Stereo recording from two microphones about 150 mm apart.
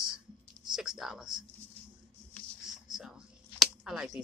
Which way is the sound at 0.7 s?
5° right (ahead or behind).